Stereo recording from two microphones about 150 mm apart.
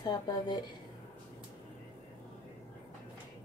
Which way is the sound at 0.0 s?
25° left (ahead or behind).